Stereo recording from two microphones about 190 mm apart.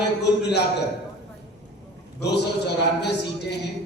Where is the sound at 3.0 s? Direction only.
60° left (ahead or behind).